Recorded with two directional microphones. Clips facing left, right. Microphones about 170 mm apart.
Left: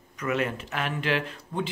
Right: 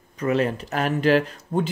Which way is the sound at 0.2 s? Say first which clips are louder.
Right 6 dB; 35° right (ahead or behind).